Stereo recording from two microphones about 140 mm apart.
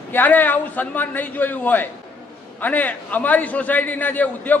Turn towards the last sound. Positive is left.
turn(degrees=10)  # may be behind; listen again after turning